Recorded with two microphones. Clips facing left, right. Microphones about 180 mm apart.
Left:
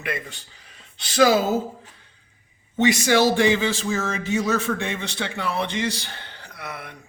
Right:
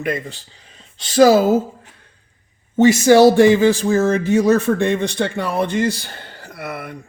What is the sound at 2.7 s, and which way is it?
Speech, 45° right (ahead or behind).